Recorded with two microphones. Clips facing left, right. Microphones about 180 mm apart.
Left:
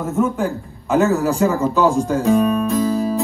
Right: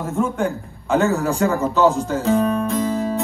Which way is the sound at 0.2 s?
5° left (ahead or behind).